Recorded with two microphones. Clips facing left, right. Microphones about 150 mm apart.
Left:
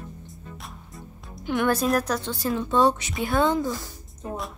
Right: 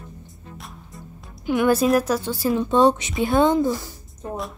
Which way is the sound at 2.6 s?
20° right (ahead or behind).